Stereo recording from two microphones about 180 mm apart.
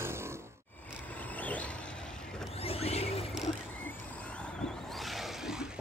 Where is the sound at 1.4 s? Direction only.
10° left (ahead or behind).